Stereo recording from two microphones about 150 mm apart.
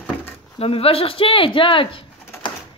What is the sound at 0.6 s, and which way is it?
Speech, 40° left (ahead or behind).